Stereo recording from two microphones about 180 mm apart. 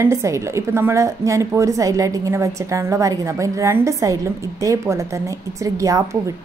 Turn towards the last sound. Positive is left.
turn(degrees=-20)  # may be behind; listen again after turning